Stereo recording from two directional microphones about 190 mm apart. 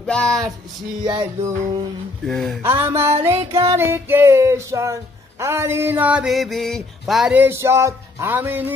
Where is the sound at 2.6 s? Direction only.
10° right (ahead or behind).